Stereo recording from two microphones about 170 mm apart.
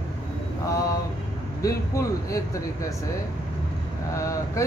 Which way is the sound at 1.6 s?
20° left (ahead or behind).